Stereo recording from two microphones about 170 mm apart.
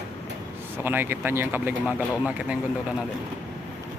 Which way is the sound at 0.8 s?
10° right (ahead or behind).